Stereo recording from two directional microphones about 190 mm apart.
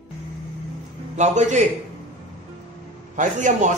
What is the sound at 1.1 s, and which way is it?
Speech, 40° right (ahead or behind).